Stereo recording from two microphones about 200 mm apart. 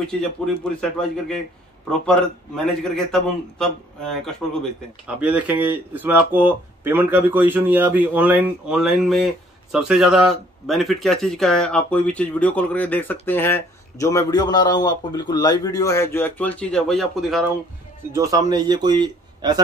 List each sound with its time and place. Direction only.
0.0 s a man's voice: 5° left (ahead or behind)
18.1 s a man's voice: 15° right (ahead or behind)